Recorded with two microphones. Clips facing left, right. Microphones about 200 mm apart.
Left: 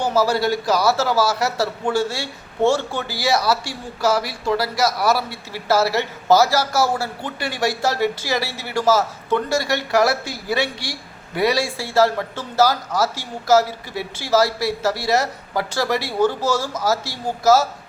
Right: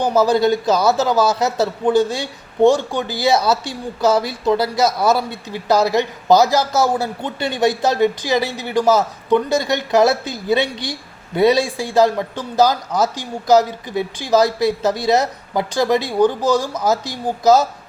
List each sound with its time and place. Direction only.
0.0 s a man's voice: 20° right (ahead or behind)